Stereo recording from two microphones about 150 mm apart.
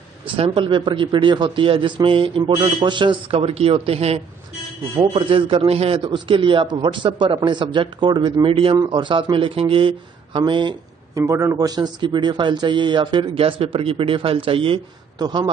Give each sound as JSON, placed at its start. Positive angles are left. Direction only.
{"t": 0.4, "sound": "speech", "side_deg": -35}